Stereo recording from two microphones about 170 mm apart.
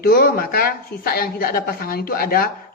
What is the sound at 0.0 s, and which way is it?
Speech, 60° left (ahead or behind).